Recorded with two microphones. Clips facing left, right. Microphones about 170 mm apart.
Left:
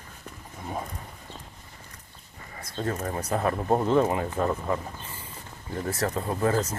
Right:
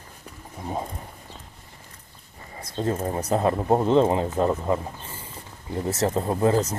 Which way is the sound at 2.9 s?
25° right (ahead or behind).